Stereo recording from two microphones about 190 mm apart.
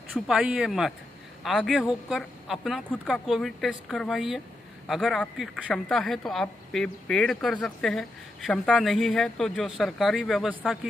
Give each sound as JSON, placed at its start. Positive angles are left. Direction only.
{"t": 0.1, "sound": "a woman's voice", "side_deg": 0}